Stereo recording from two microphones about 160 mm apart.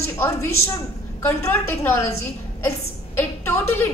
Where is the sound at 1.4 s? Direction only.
15° left (ahead or behind).